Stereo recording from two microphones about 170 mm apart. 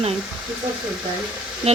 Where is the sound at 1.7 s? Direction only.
40° right (ahead or behind).